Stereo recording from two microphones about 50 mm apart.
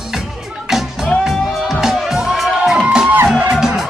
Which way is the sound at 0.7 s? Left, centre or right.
Centre.